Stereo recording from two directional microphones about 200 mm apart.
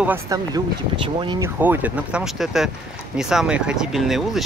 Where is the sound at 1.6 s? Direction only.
10° right (ahead or behind).